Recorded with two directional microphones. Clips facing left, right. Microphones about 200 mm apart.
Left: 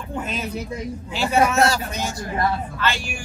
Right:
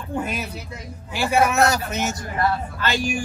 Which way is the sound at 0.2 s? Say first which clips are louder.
Left 1 dB; 10° right (ahead or behind).